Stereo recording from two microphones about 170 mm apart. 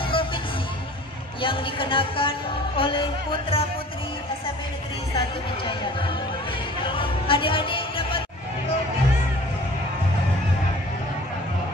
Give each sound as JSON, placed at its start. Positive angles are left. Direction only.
{"t": 0.0, "sound": "music", "side_deg": 30}
{"t": 1.4, "sound": "speech", "side_deg": 30}
{"t": 6.8, "sound": "music", "side_deg": 30}